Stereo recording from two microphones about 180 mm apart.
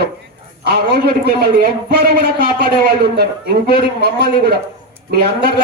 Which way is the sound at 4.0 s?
65° right (ahead or behind).